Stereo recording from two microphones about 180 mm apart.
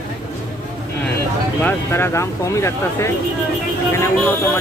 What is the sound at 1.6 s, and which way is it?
Speech, 10° left (ahead or behind).